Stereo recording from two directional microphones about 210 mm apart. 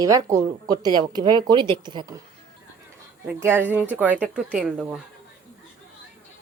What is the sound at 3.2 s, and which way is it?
Speech, 10° right (ahead or behind).